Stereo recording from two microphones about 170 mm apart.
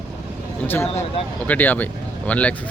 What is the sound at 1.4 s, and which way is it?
Speech, 10° left (ahead or behind).